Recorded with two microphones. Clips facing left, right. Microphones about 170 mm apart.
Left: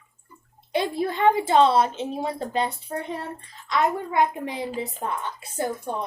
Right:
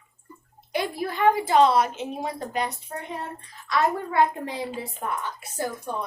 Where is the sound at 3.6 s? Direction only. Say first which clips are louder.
Even; 20° left (ahead or behind).